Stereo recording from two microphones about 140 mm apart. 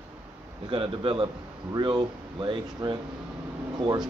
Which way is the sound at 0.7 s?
40° right (ahead or behind).